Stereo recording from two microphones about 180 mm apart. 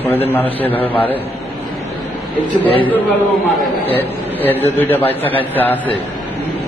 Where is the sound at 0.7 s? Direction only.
30° left (ahead or behind).